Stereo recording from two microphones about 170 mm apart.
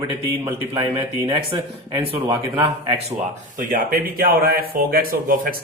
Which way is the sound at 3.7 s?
60° right (ahead or behind).